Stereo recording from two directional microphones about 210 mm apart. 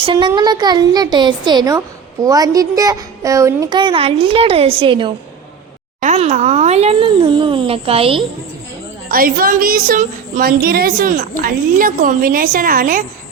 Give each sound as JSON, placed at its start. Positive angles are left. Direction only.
{"t": 0.0, "sound": "a child's voice", "side_deg": -25}
{"t": 9.0, "sound": "a woman's voice", "side_deg": -45}